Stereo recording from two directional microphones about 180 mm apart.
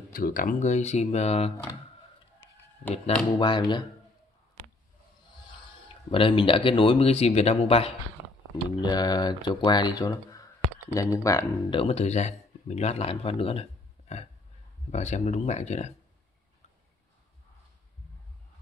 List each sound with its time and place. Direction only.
0.1 s speech: 50° left (ahead or behind); by 1.5 s 35° left (ahead or behind)
3.3 s speech: 25° left (ahead or behind)
6.0 s speech: 30° left (ahead or behind)
8.8 s speech: 20° left (ahead or behind)
11.8 s speech: 35° left (ahead or behind)